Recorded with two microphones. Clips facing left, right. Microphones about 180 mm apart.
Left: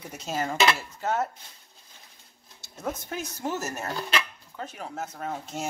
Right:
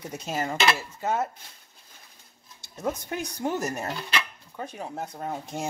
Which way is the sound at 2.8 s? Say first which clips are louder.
Right 3 dB; 15° right (ahead or behind).